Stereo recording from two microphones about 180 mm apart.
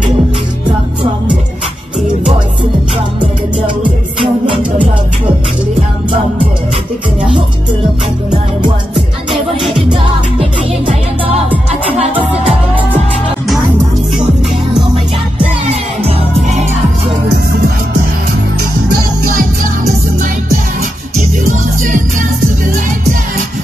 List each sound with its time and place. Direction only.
9.5 s music: centre (ahead or behind)
11.7 s music: 30° right (ahead or behind)